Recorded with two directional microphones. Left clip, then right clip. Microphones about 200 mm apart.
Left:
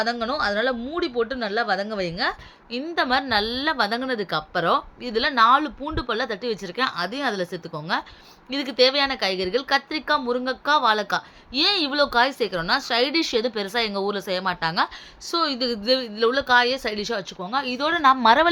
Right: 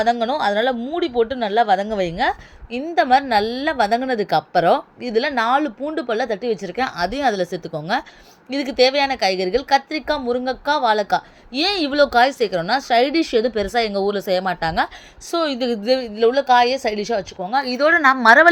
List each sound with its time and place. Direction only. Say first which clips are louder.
0.0 s a woman's voice: right 6 dB; 20° right (ahead or behind)